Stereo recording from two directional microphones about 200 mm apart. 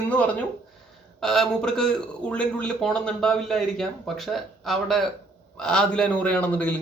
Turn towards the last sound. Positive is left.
turn(degrees=10)  # may be behind; listen again after turning